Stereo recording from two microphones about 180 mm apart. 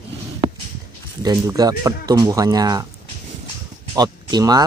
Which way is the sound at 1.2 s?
20° right (ahead or behind).